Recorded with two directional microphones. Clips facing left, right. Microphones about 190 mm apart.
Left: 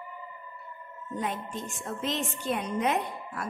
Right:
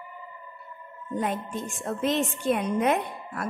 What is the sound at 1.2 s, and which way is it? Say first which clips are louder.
A woman's voice: right 4 dB; 55° right (ahead or behind).